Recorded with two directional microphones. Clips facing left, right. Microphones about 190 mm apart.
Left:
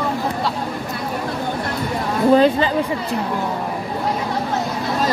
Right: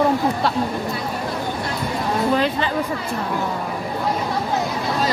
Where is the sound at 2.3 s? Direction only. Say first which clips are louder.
Left 6 dB; 35° left (ahead or behind).